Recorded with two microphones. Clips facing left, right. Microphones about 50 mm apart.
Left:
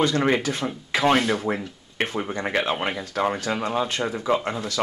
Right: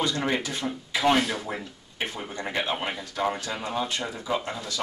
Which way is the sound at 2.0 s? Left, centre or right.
Left.